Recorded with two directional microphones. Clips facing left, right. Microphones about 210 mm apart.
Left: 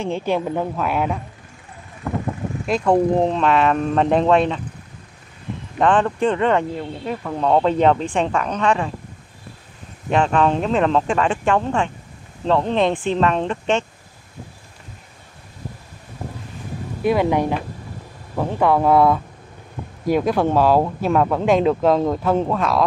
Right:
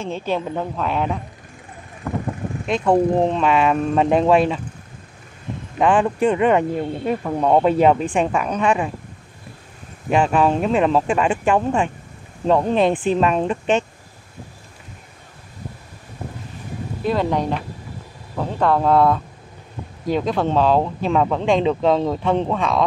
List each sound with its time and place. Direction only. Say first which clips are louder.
0.0 s a woman's voice: left 2 dB; 15° left (ahead or behind)
2.6 s speech: even; centre (ahead or behind)
5.8 s speech: even; 10° right (ahead or behind)
10.0 s speech: right 1 dB; 10° right (ahead or behind)
17.0 s a woman's voice: left 3 dB; 10° left (ahead or behind)